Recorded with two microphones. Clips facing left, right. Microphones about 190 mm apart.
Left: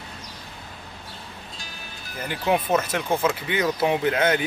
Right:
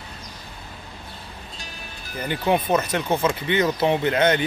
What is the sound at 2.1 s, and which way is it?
Speech, 5° left (ahead or behind).